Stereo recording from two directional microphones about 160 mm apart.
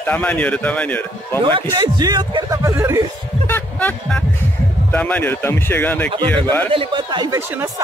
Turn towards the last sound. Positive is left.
turn(degrees=-15)  # may be behind; listen again after turning